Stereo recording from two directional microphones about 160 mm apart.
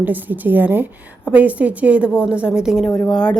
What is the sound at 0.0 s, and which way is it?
A woman's voice, 10° right (ahead or behind).